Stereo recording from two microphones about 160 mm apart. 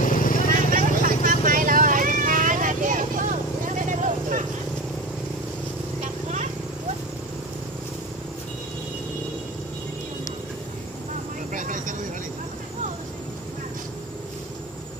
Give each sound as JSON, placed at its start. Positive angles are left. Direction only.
{"t": 0.0, "sound": "vehicle", "side_deg": 60}
{"t": 0.7, "sound": "vehicle", "side_deg": -55}
{"t": 3.8, "sound": "a sound", "side_deg": -50}
{"t": 11.5, "sound": "vehicle", "side_deg": -55}